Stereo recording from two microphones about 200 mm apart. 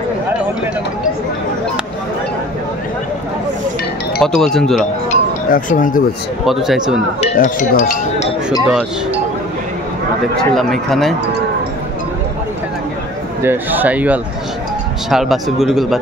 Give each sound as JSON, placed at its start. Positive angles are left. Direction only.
{"t": 4.2, "sound": "speech", "side_deg": 5}
{"t": 5.1, "sound": "a sound", "side_deg": 40}
{"t": 6.4, "sound": "speech", "side_deg": 0}
{"t": 7.3, "sound": "speech", "side_deg": 40}
{"t": 8.6, "sound": "speech", "side_deg": -5}
{"t": 10.5, "sound": "speech", "side_deg": 0}
{"t": 13.4, "sound": "speech", "side_deg": -10}